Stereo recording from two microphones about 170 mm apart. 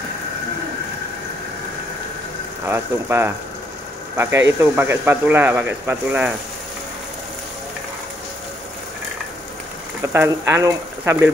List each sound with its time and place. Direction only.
2.6 s speech: 15° right (ahead or behind)
10.1 s speech: 15° right (ahead or behind)